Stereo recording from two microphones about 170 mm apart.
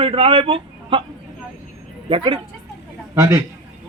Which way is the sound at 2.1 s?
30° right (ahead or behind).